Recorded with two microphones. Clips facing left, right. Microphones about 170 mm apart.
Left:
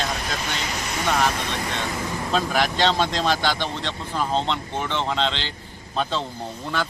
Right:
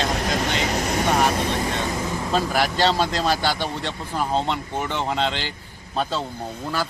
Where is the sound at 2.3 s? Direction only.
5° right (ahead or behind).